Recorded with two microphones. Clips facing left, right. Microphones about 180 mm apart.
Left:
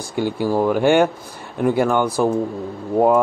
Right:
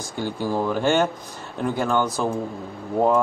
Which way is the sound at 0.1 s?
10° left (ahead or behind).